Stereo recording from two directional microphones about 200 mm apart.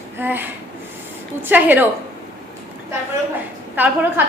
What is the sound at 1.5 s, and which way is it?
Speech, 10° right (ahead or behind).